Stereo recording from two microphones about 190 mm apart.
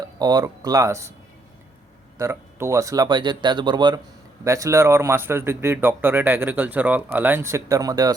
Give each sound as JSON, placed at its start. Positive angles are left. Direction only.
{"t": 0.2, "sound": "speech", "side_deg": -20}
{"t": 2.1, "sound": "speech", "side_deg": -15}